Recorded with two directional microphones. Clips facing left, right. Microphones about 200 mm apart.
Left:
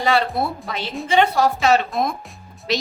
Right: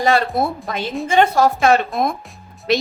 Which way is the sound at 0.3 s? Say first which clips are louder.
Right 3 dB; 50° right (ahead or behind).